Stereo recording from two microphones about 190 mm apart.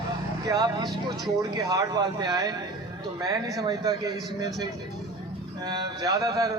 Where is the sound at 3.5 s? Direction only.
20° right (ahead or behind).